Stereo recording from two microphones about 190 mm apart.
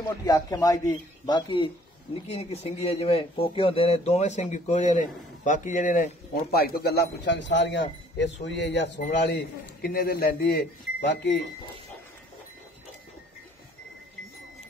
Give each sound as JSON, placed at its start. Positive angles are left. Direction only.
{"t": 0.2, "sound": "a man's voice", "side_deg": 20}
{"t": 6.5, "sound": "speech", "side_deg": 55}